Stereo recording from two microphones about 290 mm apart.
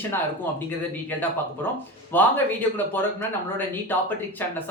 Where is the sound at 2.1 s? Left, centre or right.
Centre.